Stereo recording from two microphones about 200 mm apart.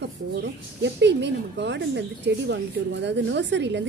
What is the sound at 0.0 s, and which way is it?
Speech, 60° right (ahead or behind).